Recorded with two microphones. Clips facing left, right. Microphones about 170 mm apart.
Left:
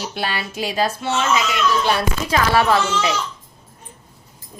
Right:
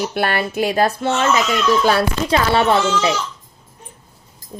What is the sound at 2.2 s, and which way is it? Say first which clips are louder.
Speech: even; 30° right (ahead or behind).